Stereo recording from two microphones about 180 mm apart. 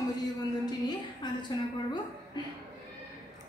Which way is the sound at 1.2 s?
25° left (ahead or behind).